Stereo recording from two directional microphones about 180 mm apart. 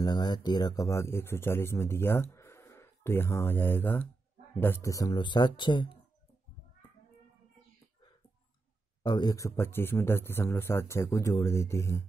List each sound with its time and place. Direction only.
0.0 s a man's voice: 25° left (ahead or behind)
9.0 s a man's voice: 25° left (ahead or behind)